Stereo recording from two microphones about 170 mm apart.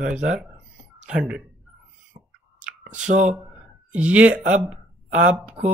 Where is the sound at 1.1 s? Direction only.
5° right (ahead or behind).